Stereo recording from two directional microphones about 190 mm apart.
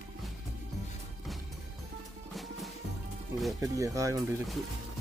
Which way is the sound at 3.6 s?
15° right (ahead or behind).